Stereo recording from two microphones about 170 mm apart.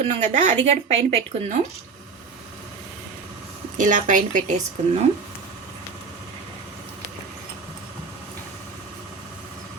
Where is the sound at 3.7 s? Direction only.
50° right (ahead or behind).